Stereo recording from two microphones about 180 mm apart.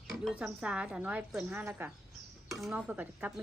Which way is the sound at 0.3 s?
5° right (ahead or behind).